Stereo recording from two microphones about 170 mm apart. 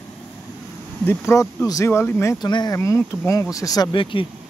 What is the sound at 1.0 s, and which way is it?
Speech, 15° left (ahead or behind).